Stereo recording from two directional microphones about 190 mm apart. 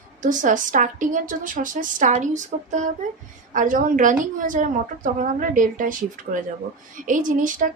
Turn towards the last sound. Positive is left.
turn(degrees=-45)  # may be behind; listen again after turning